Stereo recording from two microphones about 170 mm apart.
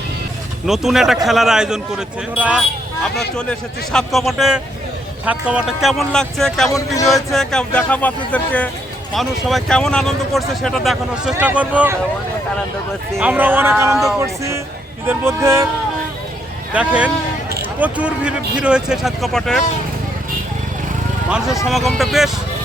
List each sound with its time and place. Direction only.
0.7 s speech: centre (ahead or behind)
3.2 s speech: 5° left (ahead or behind)
6.7 s speech: 20° left (ahead or behind)
7.1 s speech: centre (ahead or behind)
13.1 s speech: 10° right (ahead or behind)
16.7 s speech: 5° right (ahead or behind)
21.7 s speech: centre (ahead or behind)